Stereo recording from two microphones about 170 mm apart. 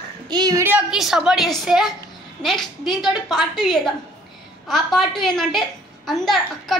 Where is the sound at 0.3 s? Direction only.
20° right (ahead or behind).